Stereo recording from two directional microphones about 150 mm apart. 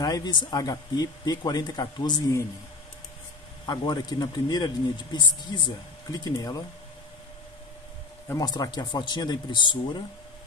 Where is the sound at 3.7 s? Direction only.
30° left (ahead or behind).